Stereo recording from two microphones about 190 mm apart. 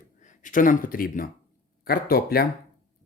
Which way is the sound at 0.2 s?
45° left (ahead or behind).